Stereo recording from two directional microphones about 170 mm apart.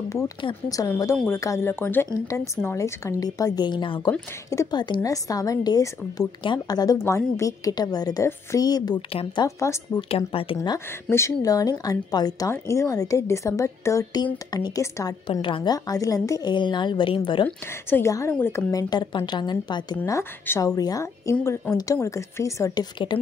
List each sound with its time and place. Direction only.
0.1 s a woman's voice: 25° left (ahead or behind)
9.9 s speech: 35° left (ahead or behind)
11.1 s a woman's voice: 15° left (ahead or behind)
17.5 s a woman's voice: 10° left (ahead or behind)
20.0 s a woman's voice: 15° left (ahead or behind)